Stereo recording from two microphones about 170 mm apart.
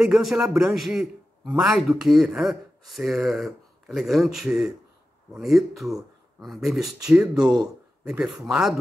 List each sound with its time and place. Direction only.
0.0 s a man's voice: centre (ahead or behind)